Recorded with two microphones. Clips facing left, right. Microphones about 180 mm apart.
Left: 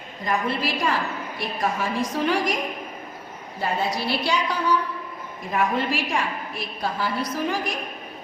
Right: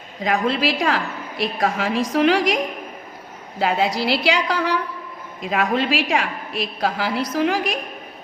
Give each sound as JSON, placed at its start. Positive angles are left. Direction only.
{"t": 0.2, "sound": "a woman's voice", "side_deg": -90}
{"t": 3.6, "sound": "a woman's voice", "side_deg": -90}